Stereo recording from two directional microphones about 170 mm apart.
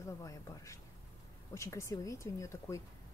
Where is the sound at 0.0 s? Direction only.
20° left (ahead or behind).